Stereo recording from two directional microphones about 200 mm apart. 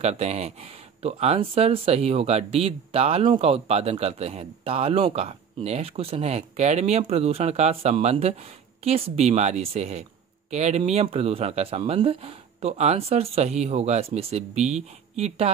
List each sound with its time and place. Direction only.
0.0 s speech: 35° right (ahead or behind)